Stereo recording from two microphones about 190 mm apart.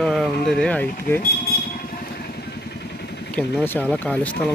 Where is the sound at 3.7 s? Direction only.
5° left (ahead or behind).